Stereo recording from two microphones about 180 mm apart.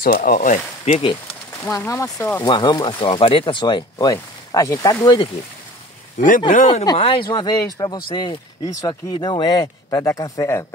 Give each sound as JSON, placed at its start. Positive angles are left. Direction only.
{"t": 0.0, "sound": "speech", "side_deg": 55}
{"t": 1.7, "sound": "speech", "side_deg": 15}
{"t": 2.4, "sound": "speech", "side_deg": 25}
{"t": 6.1, "sound": "speech", "side_deg": 45}
{"t": 7.0, "sound": "speech", "side_deg": 30}